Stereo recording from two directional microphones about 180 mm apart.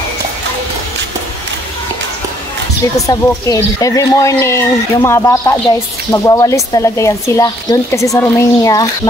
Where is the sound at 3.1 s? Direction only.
20° left (ahead or behind).